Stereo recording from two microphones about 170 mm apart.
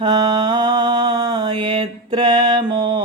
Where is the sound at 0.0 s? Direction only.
30° right (ahead or behind).